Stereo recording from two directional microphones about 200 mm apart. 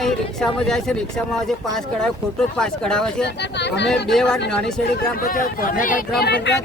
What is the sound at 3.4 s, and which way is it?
Speech, 60° left (ahead or behind).